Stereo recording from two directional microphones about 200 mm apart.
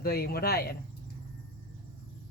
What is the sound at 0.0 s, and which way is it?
Speech, 50° left (ahead or behind).